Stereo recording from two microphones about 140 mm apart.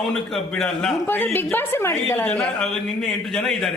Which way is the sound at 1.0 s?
15° left (ahead or behind).